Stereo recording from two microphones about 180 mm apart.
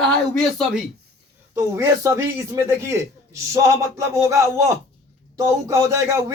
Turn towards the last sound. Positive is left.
turn(degrees=-15)  # may be behind; listen again after turning